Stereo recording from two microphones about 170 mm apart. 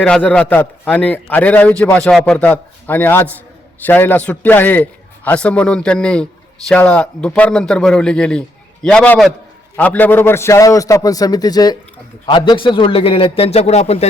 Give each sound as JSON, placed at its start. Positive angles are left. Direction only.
{"t": 0.0, "sound": "a man's voice", "side_deg": 5}